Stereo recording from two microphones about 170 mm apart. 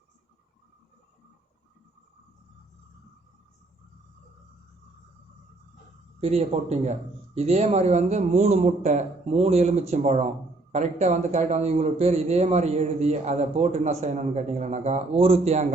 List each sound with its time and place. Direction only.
6.1 s a man's voice: 35° right (ahead or behind)